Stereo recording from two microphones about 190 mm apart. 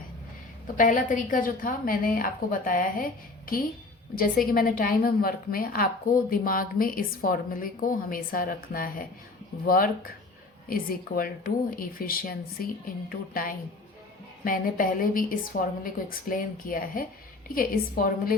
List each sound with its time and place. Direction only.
0.8 s a woman's voice: 45° left (ahead or behind)